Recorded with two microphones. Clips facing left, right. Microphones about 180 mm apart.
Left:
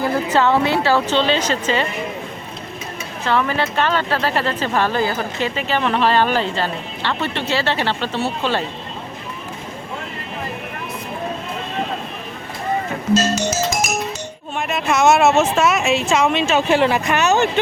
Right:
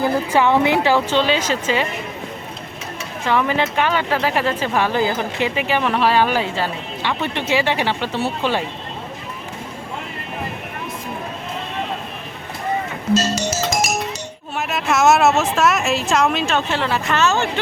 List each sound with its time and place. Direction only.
0.0 s speech: 15° right (ahead or behind)
3.2 s speech: 15° right (ahead or behind)
13.2 s music: 55° left (ahead or behind)
14.6 s speech: centre (ahead or behind)
16.6 s speech: 15° left (ahead or behind)